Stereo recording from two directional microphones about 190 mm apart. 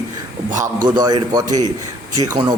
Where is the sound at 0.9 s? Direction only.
20° right (ahead or behind).